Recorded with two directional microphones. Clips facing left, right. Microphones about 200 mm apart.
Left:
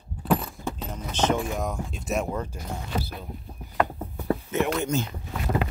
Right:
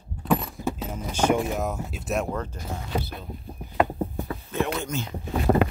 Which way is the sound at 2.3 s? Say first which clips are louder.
Even; 10° left (ahead or behind).